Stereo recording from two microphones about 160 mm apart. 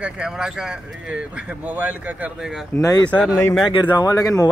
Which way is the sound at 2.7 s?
20° left (ahead or behind).